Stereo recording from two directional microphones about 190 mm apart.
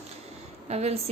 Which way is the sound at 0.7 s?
35° right (ahead or behind).